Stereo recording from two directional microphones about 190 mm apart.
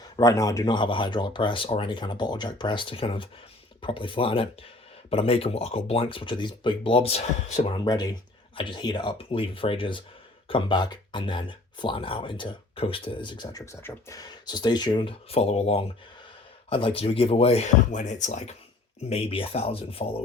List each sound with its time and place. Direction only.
0.0 s speech: 20° left (ahead or behind)